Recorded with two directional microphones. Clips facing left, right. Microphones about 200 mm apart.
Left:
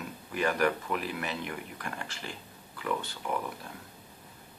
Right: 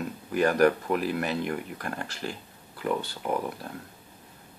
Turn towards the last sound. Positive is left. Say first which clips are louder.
# right 4 dB
turn(degrees=-35)  # may be behind; listen again after turning